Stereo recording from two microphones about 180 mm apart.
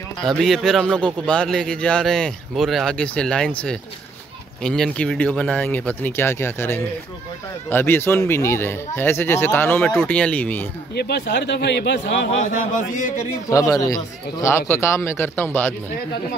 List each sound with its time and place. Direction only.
0.2 s speech: centre (ahead or behind)
11.0 s speech: 70° left (ahead or behind)
12.7 s speech: 45° left (ahead or behind)
13.5 s speech: 20° left (ahead or behind)